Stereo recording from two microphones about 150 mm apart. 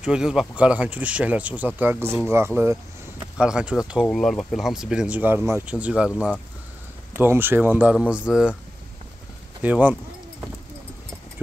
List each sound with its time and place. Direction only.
0.0 s speech: 5° right (ahead or behind)
9.6 s speech: 10° right (ahead or behind)